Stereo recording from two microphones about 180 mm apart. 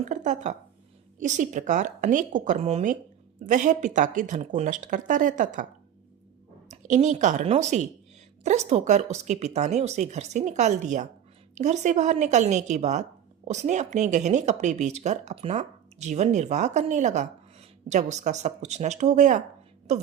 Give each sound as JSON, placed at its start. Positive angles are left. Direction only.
{"t": 0.0, "sound": "speech", "side_deg": -45}
{"t": 6.7, "sound": "speech", "side_deg": -40}